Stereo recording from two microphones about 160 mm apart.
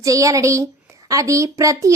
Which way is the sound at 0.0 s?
20° right (ahead or behind).